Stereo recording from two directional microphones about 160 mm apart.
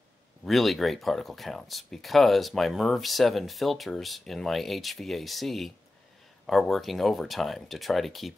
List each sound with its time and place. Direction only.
0.5 s speech: centre (ahead or behind)